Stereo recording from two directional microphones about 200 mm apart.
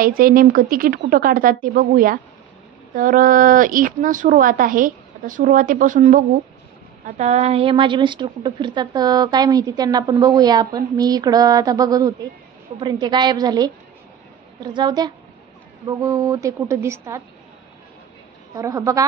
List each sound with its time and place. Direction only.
0.0 s a woman's voice: 45° right (ahead or behind); by 17.2 s 15° right (ahead or behind)
18.5 s a woman's voice: 15° right (ahead or behind)